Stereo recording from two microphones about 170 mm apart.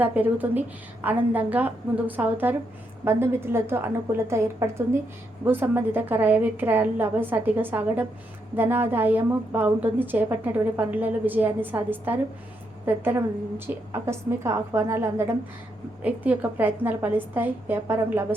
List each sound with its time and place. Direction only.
0.0 s a woman's voice: 10° right (ahead or behind)